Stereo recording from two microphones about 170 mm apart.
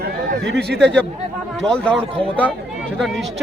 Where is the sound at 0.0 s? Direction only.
80° right.